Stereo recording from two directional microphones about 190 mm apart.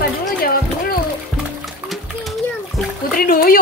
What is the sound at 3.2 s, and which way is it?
Speech, 50° left (ahead or behind).